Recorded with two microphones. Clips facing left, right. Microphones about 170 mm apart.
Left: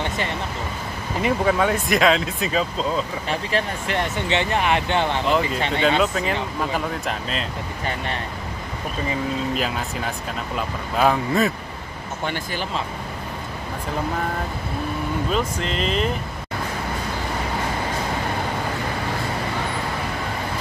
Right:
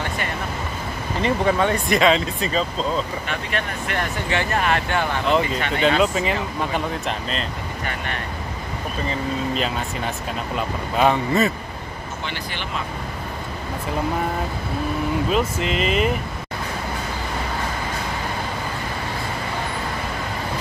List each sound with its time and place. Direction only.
1.2 s speech: 5° left (ahead or behind)
3.3 s speech: 30° left (ahead or behind)
5.8 s speech: centre (ahead or behind)
9.1 s speech: 5° left (ahead or behind)
15.3 s speech: 5° right (ahead or behind)